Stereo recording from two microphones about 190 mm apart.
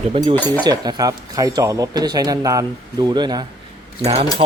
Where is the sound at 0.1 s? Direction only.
30° right (ahead or behind).